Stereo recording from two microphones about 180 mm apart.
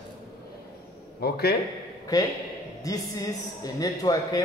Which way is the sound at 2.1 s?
20° left (ahead or behind).